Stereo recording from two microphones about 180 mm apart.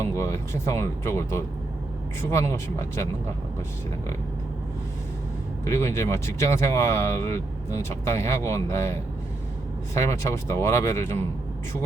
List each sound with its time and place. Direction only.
0.0 s speech: 15° left (ahead or behind)
5.6 s speech: 15° left (ahead or behind)